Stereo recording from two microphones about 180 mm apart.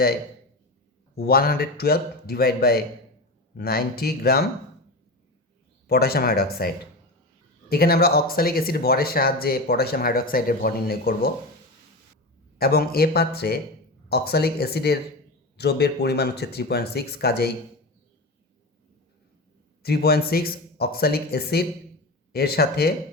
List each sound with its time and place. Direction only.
1.1 s speech: 55° left (ahead or behind)
5.9 s speech: 60° left (ahead or behind)
7.7 s speech: 55° left (ahead or behind)
12.5 s speech: 60° left (ahead or behind)
19.8 s speech: 60° left (ahead or behind)